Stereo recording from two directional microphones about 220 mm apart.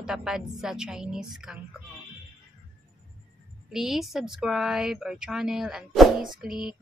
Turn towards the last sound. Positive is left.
turn(degrees=-5)  # may be behind; listen again after turning